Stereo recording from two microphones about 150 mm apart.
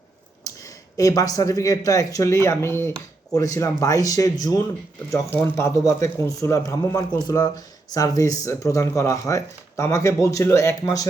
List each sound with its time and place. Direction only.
0.9 s a man's voice: 25° left (ahead or behind)